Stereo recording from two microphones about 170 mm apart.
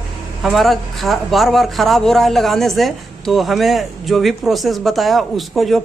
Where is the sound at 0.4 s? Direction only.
Centre (ahead or behind).